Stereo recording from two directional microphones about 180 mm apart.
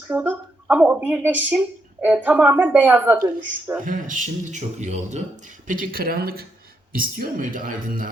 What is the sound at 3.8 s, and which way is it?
Speech, 45° right (ahead or behind).